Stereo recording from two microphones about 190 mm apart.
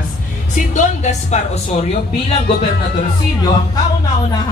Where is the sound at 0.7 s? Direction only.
40° left (ahead or behind).